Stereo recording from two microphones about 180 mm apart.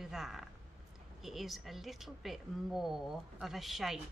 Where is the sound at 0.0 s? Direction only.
Centre (ahead or behind).